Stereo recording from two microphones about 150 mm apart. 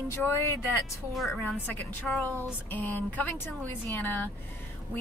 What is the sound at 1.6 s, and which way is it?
A woman's voice, 15° left (ahead or behind).